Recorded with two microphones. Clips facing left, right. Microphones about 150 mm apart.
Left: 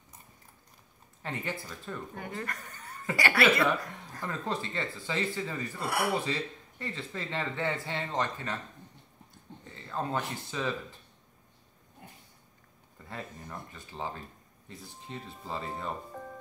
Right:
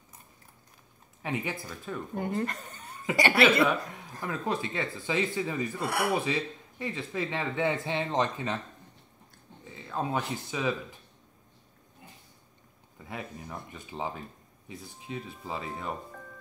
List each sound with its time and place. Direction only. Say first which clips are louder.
1.2 s speech: right 3 dB; 15° right (ahead or behind)
4.2 s speech: right 3 dB; 10° right (ahead or behind)
9.7 s speech: right 2 dB; 10° right (ahead or behind)
13.1 s speech: right 2 dB; 10° right (ahead or behind)